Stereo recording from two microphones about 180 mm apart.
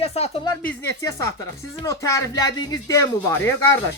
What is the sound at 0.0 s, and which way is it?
Speech, 35° left (ahead or behind).